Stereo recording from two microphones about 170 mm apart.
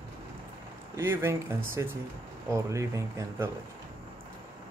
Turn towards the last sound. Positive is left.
turn(degrees=-20)  # may be behind; listen again after turning